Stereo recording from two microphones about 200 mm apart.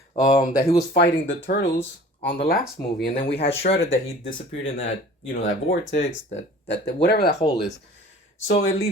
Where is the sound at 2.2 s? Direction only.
55° left (ahead or behind).